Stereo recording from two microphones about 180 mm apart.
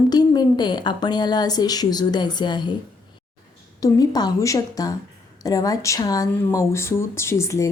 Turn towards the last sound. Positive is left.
turn(degrees=15)  # may be behind; listen again after turning